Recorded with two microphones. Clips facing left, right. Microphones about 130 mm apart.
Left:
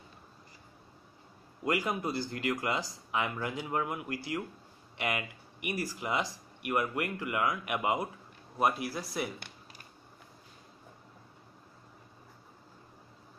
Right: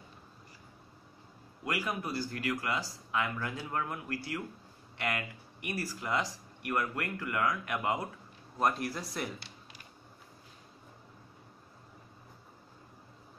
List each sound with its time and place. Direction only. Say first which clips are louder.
1.6 s speech: left 4 dB; 20° left (ahead or behind); by 9.3 s 5° left (ahead or behind)